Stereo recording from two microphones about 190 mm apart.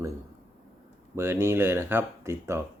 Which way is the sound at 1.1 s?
15° right (ahead or behind).